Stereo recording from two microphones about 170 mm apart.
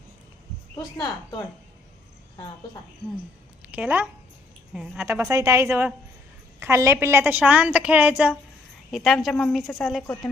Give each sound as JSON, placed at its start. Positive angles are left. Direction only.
{"t": 3.6, "sound": "speech", "side_deg": -10}
{"t": 5.0, "sound": "a woman's voice", "side_deg": -15}